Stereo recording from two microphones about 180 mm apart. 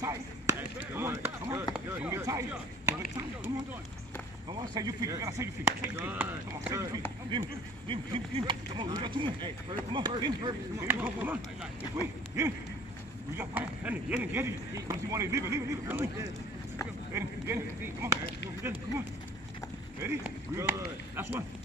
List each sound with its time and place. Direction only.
0.0 s speech: 15° right (ahead or behind)
4.5 s speech: 20° right (ahead or behind)
7.3 s speech: 25° right (ahead or behind)
10.9 s speech: 10° right (ahead or behind)
12.4 s speech: 15° right (ahead or behind)